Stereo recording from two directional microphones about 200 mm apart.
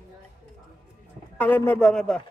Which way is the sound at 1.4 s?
10° left (ahead or behind).